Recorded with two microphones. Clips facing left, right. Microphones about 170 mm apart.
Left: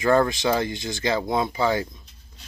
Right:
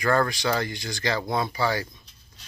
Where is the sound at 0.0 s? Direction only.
20° left (ahead or behind).